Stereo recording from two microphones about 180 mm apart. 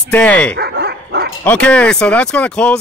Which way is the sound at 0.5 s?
65° right (ahead or behind).